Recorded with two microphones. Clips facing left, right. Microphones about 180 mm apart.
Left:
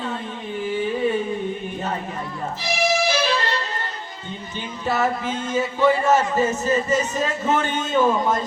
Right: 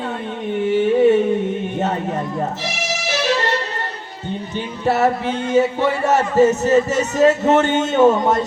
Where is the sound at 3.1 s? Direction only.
75° right (ahead or behind).